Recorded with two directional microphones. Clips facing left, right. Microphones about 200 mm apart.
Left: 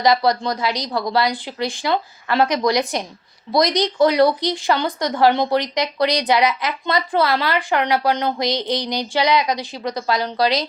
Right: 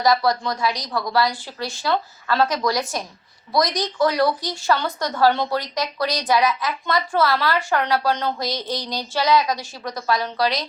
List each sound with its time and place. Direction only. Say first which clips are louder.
0.0 s a woman's voice: left 2 dB; 20° left (ahead or behind)